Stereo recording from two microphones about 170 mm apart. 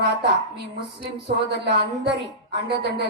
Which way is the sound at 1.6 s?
85° right.